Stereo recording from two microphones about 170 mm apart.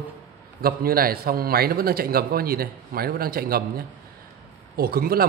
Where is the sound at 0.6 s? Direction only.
60° right (ahead or behind).